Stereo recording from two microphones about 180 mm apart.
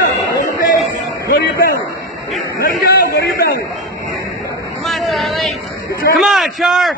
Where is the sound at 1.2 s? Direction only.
60° left (ahead or behind).